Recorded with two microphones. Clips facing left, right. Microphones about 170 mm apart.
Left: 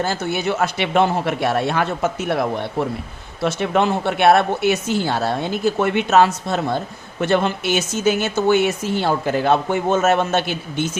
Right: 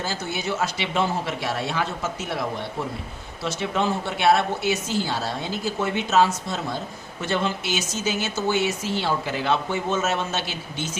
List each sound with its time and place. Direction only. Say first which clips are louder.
0.0 s speech: left 7 dB; 60° left (ahead or behind)